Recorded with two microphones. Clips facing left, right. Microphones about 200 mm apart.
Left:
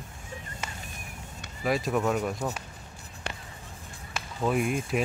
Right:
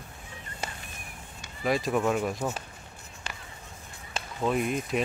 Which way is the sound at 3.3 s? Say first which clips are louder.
Left 4 dB; 60° left (ahead or behind).